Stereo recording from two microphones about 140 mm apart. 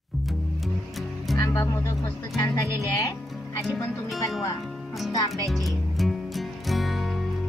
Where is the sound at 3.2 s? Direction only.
Centre (ahead or behind).